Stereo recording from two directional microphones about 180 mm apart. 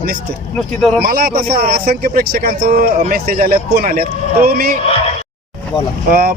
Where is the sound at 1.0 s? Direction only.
55° right (ahead or behind).